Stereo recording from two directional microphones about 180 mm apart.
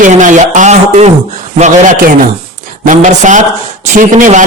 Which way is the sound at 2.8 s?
45° right (ahead or behind).